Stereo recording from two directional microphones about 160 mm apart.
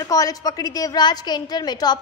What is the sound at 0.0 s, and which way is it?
A woman's voice, 20° left (ahead or behind).